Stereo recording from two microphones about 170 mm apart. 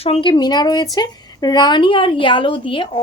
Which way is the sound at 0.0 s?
30° left (ahead or behind).